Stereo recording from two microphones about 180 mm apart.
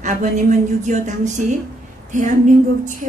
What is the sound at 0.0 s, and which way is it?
Female singing, 45° right (ahead or behind).